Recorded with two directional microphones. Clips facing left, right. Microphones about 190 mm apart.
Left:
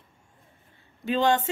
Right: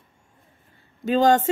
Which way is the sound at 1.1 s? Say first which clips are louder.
Right 5 dB; 40° right (ahead or behind).